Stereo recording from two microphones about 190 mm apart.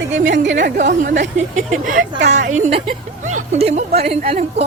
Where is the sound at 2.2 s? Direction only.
40° right (ahead or behind).